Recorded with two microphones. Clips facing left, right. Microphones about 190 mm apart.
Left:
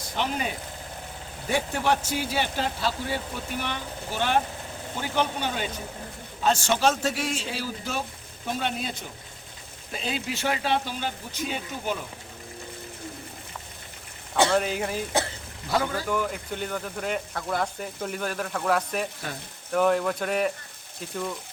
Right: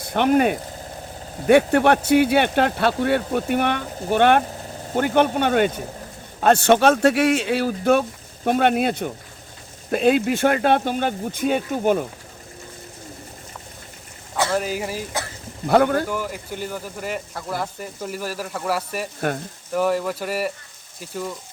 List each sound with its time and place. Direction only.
0.0 s speech: 60° right (ahead or behind)
14.5 s speech: 5° right (ahead or behind)
15.6 s speech: 60° right (ahead or behind)
16.0 s speech: 5° right (ahead or behind)